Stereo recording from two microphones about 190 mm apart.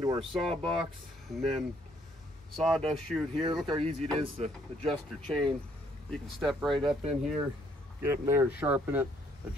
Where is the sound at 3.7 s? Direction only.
35° right (ahead or behind).